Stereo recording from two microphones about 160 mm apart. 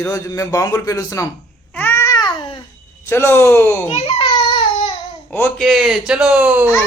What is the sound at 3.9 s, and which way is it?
Baby cry, 35° left (ahead or behind).